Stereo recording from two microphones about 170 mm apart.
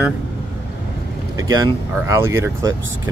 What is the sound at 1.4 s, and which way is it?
Speech, 20° right (ahead or behind).